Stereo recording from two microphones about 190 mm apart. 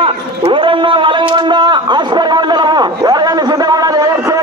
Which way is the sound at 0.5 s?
25° right (ahead or behind).